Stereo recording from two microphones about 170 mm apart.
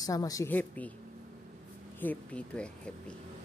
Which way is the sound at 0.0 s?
20° left (ahead or behind).